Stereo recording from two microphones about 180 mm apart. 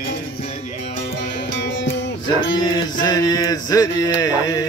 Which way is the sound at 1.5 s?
90° left.